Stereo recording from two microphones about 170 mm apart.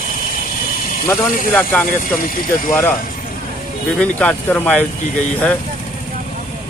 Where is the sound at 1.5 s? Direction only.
10° left (ahead or behind).